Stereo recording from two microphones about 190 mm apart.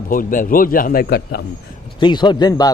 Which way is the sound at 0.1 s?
45° left (ahead or behind).